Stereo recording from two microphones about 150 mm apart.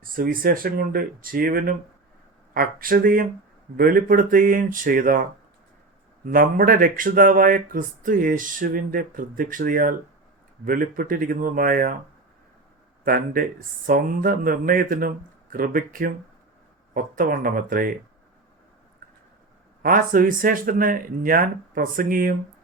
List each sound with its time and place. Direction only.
0.0 s speech: 70° right (ahead or behind)
6.2 s speech: 70° right (ahead or behind)
13.1 s speech: 70° right (ahead or behind)
19.8 s speech: 65° right (ahead or behind)